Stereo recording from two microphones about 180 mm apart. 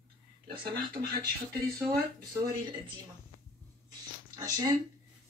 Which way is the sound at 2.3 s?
15° right (ahead or behind).